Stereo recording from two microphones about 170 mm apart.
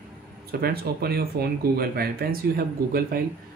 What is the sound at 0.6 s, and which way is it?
Speech, 65° right (ahead or behind).